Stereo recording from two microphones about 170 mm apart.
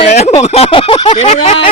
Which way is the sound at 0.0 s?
40° left (ahead or behind).